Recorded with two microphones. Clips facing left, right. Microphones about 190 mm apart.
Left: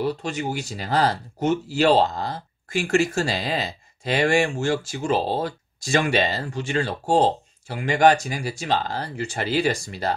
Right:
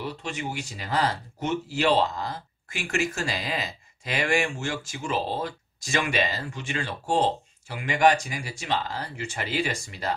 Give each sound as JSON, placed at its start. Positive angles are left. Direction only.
{"t": 0.0, "sound": "speech", "side_deg": 40}